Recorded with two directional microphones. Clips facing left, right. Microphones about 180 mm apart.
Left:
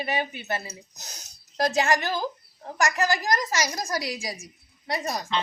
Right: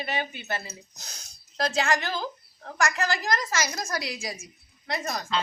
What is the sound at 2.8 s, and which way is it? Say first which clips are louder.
Speech: left 3 dB; 40° left (ahead or behind).